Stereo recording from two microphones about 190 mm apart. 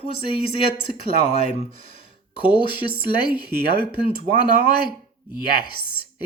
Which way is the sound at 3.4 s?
55° right (ahead or behind).